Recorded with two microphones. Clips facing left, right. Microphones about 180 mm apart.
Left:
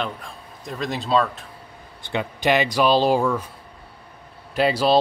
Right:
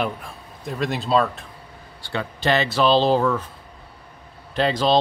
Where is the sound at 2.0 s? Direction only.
15° left (ahead or behind).